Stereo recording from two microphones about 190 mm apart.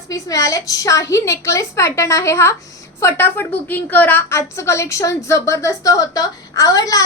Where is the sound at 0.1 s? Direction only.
15° left (ahead or behind).